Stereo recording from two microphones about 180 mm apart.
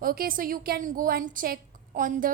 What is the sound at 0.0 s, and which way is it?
A woman's voice, 55° right (ahead or behind).